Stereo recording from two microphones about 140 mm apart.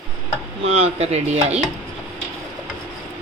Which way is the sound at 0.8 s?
50° right (ahead or behind).